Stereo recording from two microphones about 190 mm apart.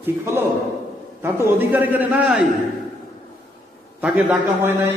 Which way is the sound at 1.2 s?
10° right (ahead or behind).